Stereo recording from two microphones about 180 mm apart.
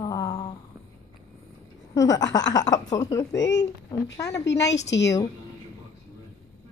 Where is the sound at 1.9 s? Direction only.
20° left (ahead or behind).